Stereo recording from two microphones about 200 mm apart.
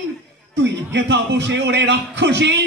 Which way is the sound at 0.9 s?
60° right (ahead or behind).